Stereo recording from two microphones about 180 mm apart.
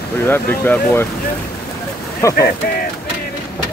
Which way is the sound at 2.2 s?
15° left (ahead or behind).